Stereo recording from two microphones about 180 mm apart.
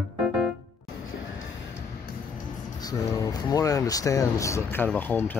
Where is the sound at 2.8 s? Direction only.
20° left (ahead or behind).